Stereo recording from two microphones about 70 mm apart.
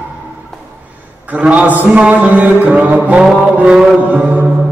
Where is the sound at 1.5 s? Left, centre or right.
Right.